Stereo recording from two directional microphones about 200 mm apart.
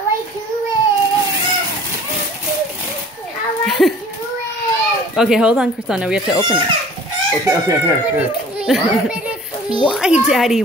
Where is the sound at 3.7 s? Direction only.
Centre (ahead or behind).